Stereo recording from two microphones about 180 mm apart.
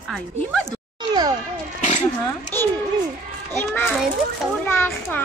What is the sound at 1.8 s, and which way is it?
Sneeze, 40° left (ahead or behind).